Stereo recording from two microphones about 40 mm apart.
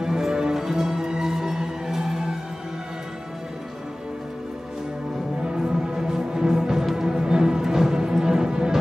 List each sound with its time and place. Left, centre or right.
0.0 s music: centre
5.4 s music: centre